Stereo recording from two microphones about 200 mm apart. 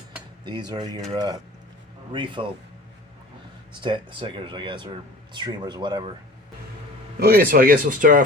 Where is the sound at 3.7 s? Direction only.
25° right (ahead or behind).